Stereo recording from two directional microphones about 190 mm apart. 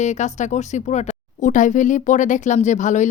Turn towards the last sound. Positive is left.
turn(degrees=40)  # may be behind; listen again after turning